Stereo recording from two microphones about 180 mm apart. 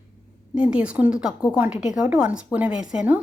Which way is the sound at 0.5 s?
5° right (ahead or behind).